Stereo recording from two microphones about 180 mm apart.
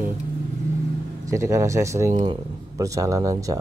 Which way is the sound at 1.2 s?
15° right (ahead or behind).